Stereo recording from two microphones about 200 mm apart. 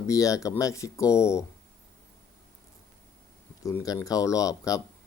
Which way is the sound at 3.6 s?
15° left (ahead or behind).